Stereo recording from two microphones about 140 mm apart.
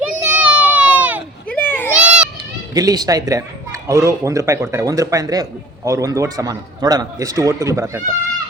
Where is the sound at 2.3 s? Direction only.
25° right (ahead or behind).